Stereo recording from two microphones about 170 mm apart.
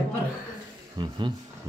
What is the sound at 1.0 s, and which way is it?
Speech, 30° right (ahead or behind).